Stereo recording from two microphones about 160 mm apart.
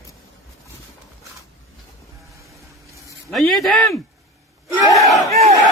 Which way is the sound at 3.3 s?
Centre (ahead or behind).